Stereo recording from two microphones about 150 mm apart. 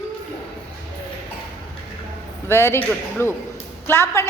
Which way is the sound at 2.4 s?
15° left (ahead or behind).